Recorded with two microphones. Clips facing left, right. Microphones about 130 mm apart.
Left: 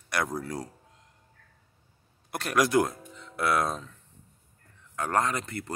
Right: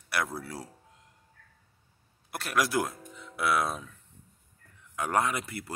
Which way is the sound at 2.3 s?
Centre (ahead or behind).